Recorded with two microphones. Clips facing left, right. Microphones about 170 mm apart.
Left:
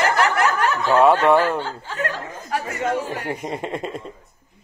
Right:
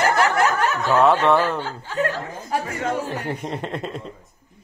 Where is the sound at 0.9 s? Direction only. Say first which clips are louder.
Left 2 dB; 10° left (ahead or behind).